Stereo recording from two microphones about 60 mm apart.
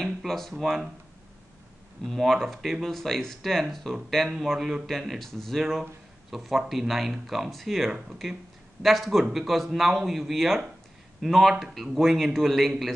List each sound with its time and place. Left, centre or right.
0.0 s speech: centre
2.0 s speech: centre